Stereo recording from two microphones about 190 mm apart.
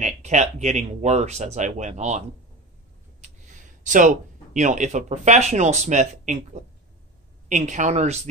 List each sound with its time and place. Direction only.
0.0 s speech: 40° right (ahead or behind)
3.8 s speech: 40° right (ahead or behind)